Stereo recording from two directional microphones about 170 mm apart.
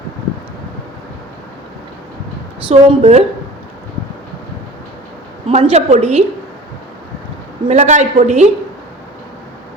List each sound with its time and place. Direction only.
2.6 s a woman's voice: 35° right (ahead or behind)
5.5 s a woman's voice: 40° right (ahead or behind)
7.7 s a woman's voice: 45° right (ahead or behind)